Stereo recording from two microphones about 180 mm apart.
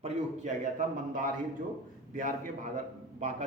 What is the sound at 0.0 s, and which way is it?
A man's voice, 40° right (ahead or behind).